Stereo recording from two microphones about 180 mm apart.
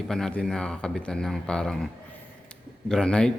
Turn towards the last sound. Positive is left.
turn(degrees=5)  # may be behind; listen again after turning